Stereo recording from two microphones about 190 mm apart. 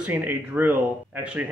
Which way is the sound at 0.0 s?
10° right (ahead or behind).